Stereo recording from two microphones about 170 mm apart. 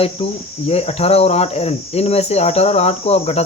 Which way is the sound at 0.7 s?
35° left (ahead or behind).